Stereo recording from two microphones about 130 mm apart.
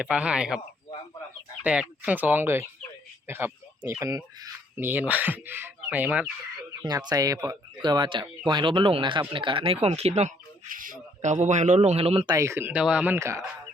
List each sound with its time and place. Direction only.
0.0 s speech: 10° right (ahead or behind)
1.6 s speech: 10° right (ahead or behind)
3.2 s a sound: 15° right (ahead or behind)
4.8 s speech: 15° right (ahead or behind)
6.8 s speech: 30° right (ahead or behind); by 10.3 s 55° right (ahead or behind)
10.7 s a man's voice: 90° right; by 12.2 s 50° right (ahead or behind)
12.2 s speech: 25° right (ahead or behind); by 13.1 s 10° right (ahead or behind)
13.1 s speech: 20° right (ahead or behind)